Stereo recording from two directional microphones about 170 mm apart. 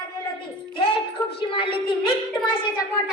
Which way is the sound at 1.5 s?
30° left (ahead or behind).